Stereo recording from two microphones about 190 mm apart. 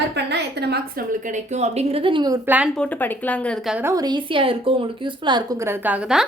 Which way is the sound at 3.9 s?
20° right (ahead or behind).